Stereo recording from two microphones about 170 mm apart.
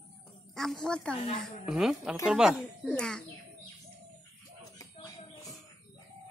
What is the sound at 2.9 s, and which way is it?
Speech, 5° left (ahead or behind).